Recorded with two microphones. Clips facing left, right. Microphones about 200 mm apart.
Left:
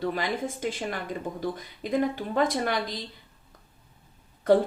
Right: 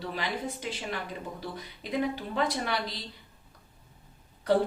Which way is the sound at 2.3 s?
50° left (ahead or behind).